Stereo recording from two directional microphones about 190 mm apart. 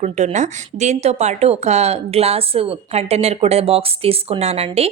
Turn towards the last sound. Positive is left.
turn(degrees=-35)  # may be behind; listen again after turning